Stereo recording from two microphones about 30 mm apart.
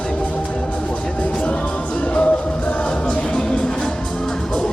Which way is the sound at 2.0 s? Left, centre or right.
Left.